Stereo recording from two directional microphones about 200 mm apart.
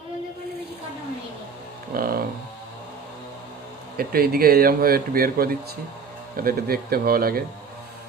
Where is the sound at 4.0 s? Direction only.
50° right (ahead or behind).